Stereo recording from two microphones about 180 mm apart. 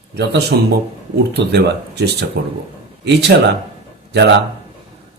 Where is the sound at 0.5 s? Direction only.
70° right (ahead or behind).